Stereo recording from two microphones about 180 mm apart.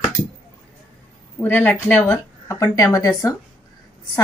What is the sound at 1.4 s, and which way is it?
Speech, 10° left (ahead or behind).